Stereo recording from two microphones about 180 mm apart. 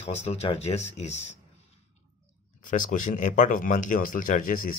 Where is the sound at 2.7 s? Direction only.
45° left (ahead or behind).